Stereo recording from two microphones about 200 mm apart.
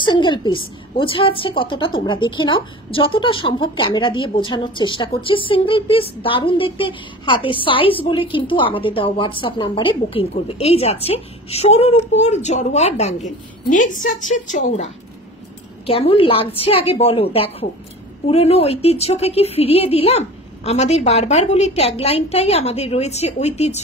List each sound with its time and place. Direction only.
0.0 s a woman's voice: 25° left (ahead or behind)
15.9 s a woman's voice: 25° left (ahead or behind)